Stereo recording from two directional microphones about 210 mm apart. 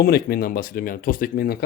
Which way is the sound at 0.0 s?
45° left (ahead or behind).